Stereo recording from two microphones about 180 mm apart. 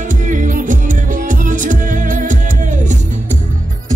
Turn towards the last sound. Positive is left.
turn(degrees=-45)  # may be behind; listen again after turning